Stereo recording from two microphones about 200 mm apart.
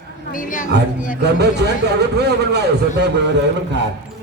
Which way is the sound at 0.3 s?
40° left (ahead or behind).